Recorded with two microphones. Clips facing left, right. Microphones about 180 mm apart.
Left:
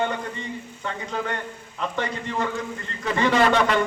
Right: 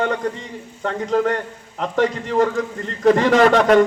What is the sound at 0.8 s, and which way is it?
Speech, 40° right (ahead or behind).